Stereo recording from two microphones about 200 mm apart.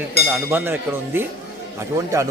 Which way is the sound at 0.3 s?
10° right (ahead or behind).